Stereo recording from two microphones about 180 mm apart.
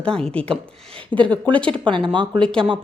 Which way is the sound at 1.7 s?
25° right (ahead or behind).